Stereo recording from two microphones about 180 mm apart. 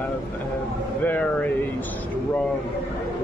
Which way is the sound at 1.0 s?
10° left (ahead or behind).